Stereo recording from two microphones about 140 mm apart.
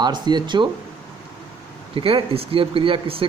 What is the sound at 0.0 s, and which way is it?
Speech, 30° right (ahead or behind).